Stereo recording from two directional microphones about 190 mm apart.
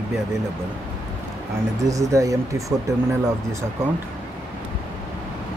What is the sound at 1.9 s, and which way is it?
Speech, 15° right (ahead or behind).